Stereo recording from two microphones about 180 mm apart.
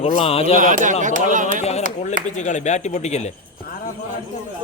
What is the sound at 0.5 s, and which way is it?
A man's voice, 45° right (ahead or behind).